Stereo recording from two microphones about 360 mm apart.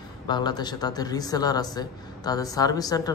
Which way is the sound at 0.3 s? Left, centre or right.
Centre.